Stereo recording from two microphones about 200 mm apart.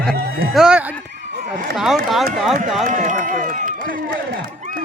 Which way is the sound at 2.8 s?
40° right (ahead or behind).